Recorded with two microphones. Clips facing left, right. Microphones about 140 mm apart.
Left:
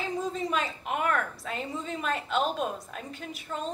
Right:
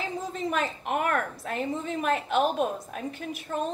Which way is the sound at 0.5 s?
50° right (ahead or behind).